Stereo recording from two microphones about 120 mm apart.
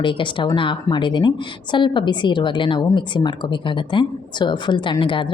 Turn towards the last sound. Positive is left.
turn(degrees=45)  # may be behind; listen again after turning